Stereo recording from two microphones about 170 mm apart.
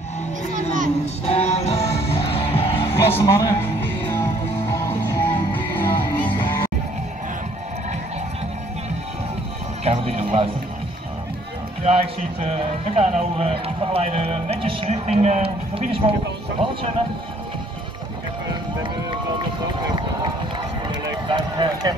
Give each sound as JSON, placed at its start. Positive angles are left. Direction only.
{"t": 1.2, "sound": "music", "side_deg": 40}
{"t": 2.7, "sound": "music", "side_deg": 15}
{"t": 9.8, "sound": "speech", "side_deg": -35}
{"t": 11.8, "sound": "speech", "side_deg": -35}
{"t": 21.3, "sound": "run", "side_deg": -25}